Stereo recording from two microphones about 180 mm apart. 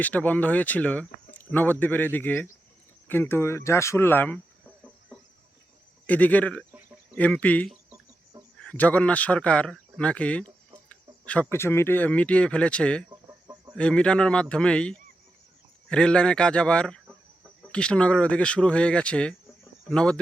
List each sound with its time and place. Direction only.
0.0 s speech: 10° left (ahead or behind)
6.1 s speech: 10° left (ahead or behind)
13.1 s chicken: 20° right (ahead or behind)
13.7 s speech: 5° left (ahead or behind)